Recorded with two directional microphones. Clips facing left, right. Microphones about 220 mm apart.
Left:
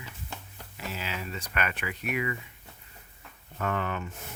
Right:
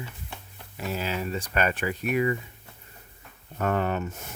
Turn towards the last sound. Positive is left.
turn(degrees=-40)  # may be behind; listen again after turning